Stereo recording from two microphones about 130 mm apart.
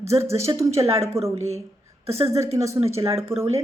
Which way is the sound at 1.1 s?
50° right (ahead or behind).